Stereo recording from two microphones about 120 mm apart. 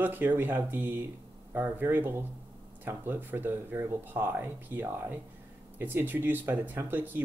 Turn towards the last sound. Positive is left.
turn(degrees=-15)  # may be behind; listen again after turning